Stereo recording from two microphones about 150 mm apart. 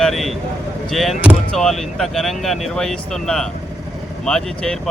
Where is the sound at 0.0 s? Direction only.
Centre (ahead or behind).